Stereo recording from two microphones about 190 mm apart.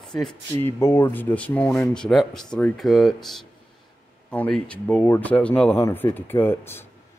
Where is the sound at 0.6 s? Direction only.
15° left (ahead or behind).